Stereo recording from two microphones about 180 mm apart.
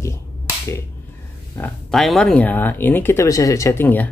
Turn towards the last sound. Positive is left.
turn(degrees=10)  # may be behind; listen again after turning